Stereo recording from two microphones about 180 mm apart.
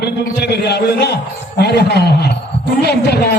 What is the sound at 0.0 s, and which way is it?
A man's voice, 65° left (ahead or behind).